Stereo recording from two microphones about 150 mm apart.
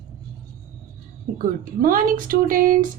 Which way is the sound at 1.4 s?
70° right (ahead or behind).